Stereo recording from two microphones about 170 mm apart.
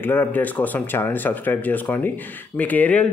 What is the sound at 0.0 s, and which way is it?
Speech, 10° left (ahead or behind).